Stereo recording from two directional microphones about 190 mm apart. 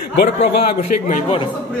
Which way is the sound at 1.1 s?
40° left (ahead or behind).